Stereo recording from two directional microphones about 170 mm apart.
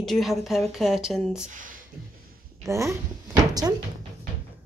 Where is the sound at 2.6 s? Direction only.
15° right (ahead or behind).